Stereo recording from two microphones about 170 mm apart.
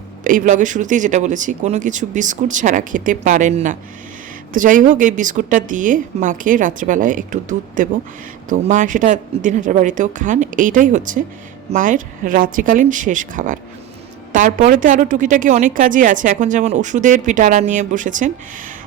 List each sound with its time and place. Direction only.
0.3 s a woman's voice: 50° right (ahead or behind)